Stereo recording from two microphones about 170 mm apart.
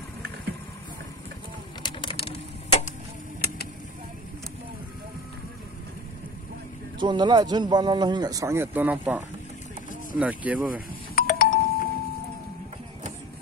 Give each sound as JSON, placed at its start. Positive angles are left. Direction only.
{"t": 1.8, "sound": "a sound", "side_deg": 30}
{"t": 7.0, "sound": "speech", "side_deg": -25}
{"t": 11.1, "sound": "doorbell", "side_deg": 55}